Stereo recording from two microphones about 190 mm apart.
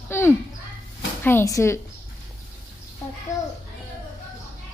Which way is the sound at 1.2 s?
10° left (ahead or behind).